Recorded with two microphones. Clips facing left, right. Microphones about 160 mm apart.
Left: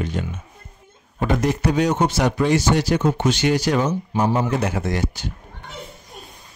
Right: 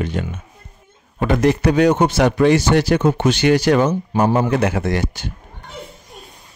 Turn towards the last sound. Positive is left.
turn(degrees=-65)  # may be behind; listen again after turning